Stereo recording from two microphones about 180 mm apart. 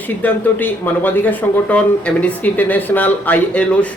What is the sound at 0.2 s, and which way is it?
Speech, 10° left (ahead or behind).